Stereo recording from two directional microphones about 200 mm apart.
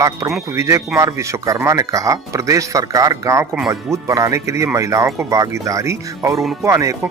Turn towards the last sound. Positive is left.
turn(degrees=-15)  # may be behind; listen again after turning